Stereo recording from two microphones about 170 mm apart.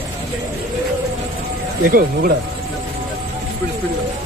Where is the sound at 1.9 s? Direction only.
60° right (ahead or behind).